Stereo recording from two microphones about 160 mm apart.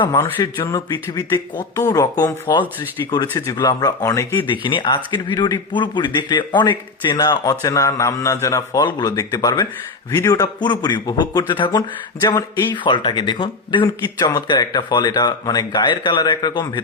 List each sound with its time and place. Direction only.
0.2 s speech: 15° left (ahead or behind)
0.6 s speech: 25° left (ahead or behind)
4.6 s speech: 30° left (ahead or behind)